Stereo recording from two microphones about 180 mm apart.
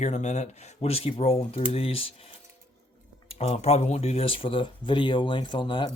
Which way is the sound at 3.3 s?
35° left (ahead or behind).